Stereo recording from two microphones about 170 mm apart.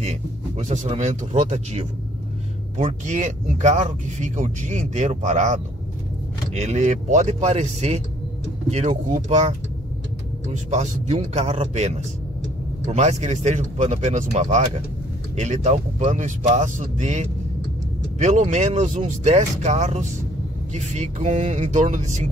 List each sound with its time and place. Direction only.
0.0 s speech: 40° right (ahead or behind)